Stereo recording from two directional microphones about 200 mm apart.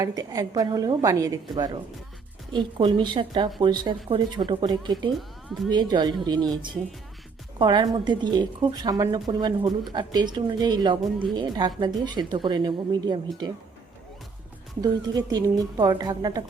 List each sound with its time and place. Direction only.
0.0 s a woman's voice: 20° right (ahead or behind)
14.8 s a woman's voice: 20° right (ahead or behind)